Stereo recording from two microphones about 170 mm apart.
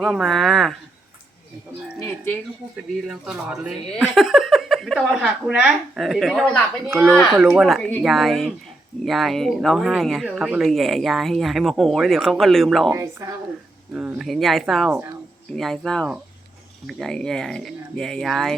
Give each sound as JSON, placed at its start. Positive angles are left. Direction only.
{"t": 0.0, "sound": "speech", "side_deg": 0}
{"t": 3.1, "sound": "speech", "side_deg": -5}
{"t": 12.9, "sound": "a woman's voice", "side_deg": -15}
{"t": 14.2, "sound": "speech", "side_deg": 0}